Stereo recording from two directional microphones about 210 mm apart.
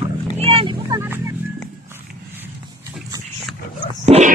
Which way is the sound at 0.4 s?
25° right (ahead or behind).